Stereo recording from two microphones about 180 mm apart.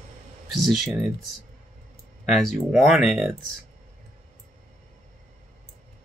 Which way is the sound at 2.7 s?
Centre (ahead or behind).